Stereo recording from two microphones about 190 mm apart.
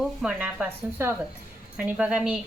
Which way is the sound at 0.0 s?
Centre (ahead or behind).